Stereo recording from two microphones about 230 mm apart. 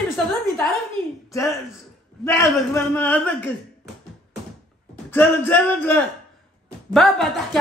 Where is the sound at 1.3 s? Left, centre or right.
Centre.